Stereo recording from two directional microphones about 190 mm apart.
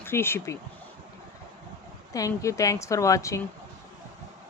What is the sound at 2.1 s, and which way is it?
Speech, 15° left (ahead or behind).